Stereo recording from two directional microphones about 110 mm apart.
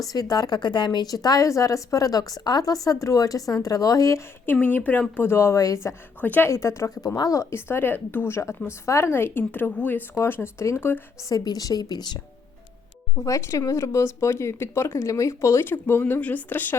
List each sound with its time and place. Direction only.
0.0 s a woman's voice: 35° left (ahead or behind)
4.5 s speech: 15° left (ahead or behind); by 5.9 s 30° left (ahead or behind)
6.1 s a woman's voice: 15° left (ahead or behind)
6.5 s speech: 25° left (ahead or behind)
11.3 s a woman's voice: 35° left (ahead or behind)
13.1 s speech: 30° left (ahead or behind)